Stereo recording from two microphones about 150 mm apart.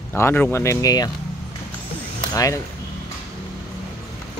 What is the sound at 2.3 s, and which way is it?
Speech, 20° left (ahead or behind).